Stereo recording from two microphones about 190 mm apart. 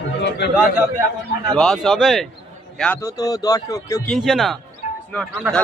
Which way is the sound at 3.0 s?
15° left (ahead or behind).